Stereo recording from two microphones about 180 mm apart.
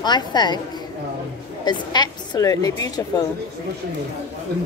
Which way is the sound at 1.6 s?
25° left (ahead or behind).